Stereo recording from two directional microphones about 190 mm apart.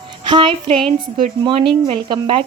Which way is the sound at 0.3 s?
25° right (ahead or behind).